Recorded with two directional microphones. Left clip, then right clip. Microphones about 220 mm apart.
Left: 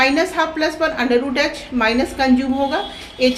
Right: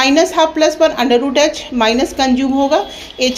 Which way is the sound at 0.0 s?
25° right (ahead or behind).